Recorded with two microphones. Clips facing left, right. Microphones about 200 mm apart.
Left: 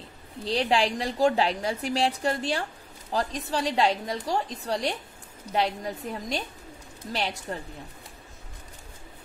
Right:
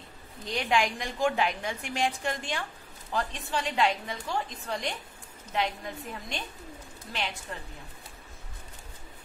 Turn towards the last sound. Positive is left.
turn(degrees=40)  # may be behind; listen again after turning